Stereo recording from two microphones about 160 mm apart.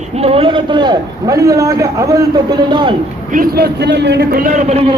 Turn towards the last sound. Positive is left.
turn(degrees=-45)  # may be behind; listen again after turning